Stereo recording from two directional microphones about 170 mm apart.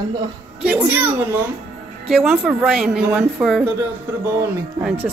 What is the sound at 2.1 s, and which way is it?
A woman's voice, 5° right (ahead or behind).